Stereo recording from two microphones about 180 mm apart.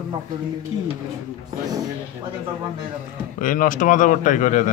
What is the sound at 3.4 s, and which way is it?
Speech, 50° left (ahead or behind).